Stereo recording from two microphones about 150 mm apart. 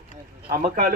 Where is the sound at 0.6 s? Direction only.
65° right (ahead or behind).